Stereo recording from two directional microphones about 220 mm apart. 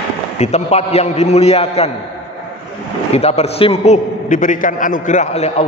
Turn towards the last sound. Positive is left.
turn(degrees=30)  # may be behind; listen again after turning